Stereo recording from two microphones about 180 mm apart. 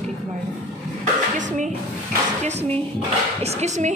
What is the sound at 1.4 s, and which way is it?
A woman's voice, 45° right (ahead or behind).